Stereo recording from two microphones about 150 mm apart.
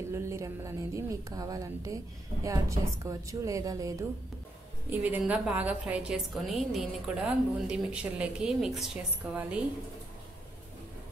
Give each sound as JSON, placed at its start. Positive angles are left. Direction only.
{"t": 0.1, "sound": "a woman's voice", "side_deg": -20}
{"t": 4.8, "sound": "a woman's voice", "side_deg": -10}